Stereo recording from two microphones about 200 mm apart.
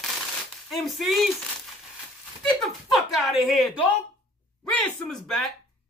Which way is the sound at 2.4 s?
Centre (ahead or behind).